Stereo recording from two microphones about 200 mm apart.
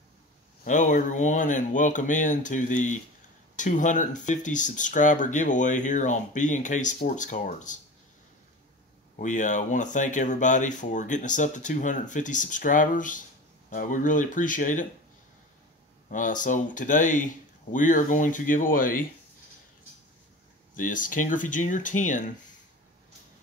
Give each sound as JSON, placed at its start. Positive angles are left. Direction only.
{"t": 0.7, "sound": "speech", "side_deg": 40}
{"t": 9.2, "sound": "speech", "side_deg": 40}
{"t": 16.1, "sound": "speech", "side_deg": 40}
{"t": 20.7, "sound": "speech", "side_deg": 40}